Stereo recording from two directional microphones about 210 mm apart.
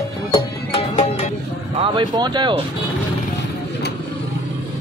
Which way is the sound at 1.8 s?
20° right (ahead or behind).